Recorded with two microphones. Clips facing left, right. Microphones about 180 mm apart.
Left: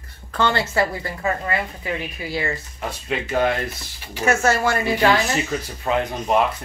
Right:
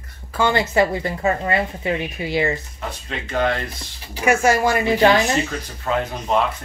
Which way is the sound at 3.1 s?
10° left (ahead or behind).